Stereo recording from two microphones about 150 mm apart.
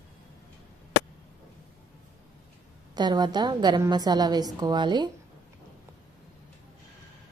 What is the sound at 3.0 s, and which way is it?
A woman's voice, 30° right (ahead or behind).